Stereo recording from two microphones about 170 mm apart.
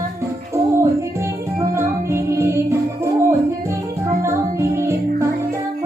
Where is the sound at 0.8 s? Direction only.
15° right (ahead or behind).